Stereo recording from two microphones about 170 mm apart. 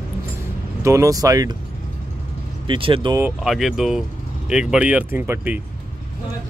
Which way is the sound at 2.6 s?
30° right (ahead or behind).